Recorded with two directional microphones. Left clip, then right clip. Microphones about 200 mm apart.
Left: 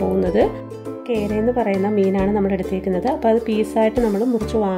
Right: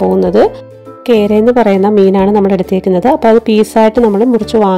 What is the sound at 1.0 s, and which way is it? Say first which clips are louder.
A woman's voice: right 12 dB; 45° right (ahead or behind).